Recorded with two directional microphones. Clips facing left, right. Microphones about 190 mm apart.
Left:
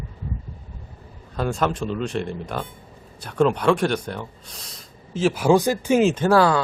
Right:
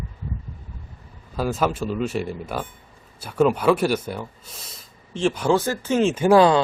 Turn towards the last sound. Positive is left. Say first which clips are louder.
# right 3 dB
turn(degrees=-20)  # may be behind; listen again after turning